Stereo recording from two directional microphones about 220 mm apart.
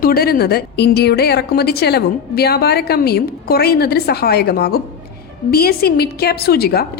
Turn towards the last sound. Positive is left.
turn(degrees=45)  # may be behind; listen again after turning